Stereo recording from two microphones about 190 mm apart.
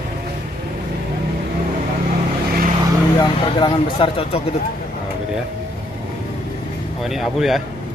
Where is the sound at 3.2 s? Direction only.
25° left (ahead or behind).